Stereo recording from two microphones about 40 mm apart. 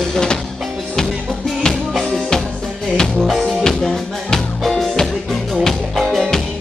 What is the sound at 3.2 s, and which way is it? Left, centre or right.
Music, centre.